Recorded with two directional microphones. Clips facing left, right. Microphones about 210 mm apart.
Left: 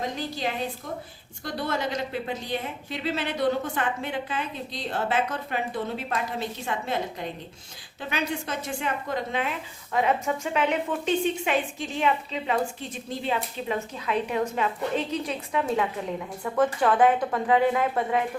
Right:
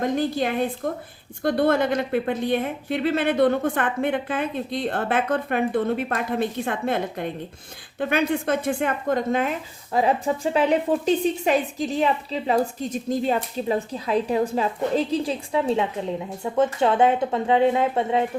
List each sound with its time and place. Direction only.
0.0 s a woman's voice: 55° right (ahead or behind); by 18.3 s 25° right (ahead or behind)